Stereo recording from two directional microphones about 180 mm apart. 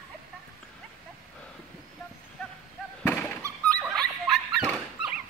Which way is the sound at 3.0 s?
10° left (ahead or behind).